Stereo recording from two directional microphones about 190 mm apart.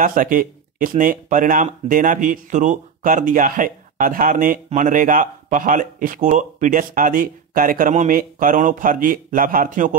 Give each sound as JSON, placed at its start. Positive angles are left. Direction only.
{"t": 0.0, "sound": "speech", "side_deg": -45}